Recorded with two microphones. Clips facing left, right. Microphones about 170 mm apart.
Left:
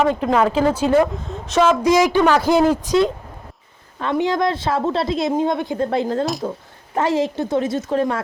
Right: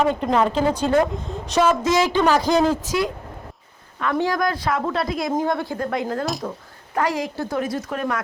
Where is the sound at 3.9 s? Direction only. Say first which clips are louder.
Left 2 dB; 25° left (ahead or behind).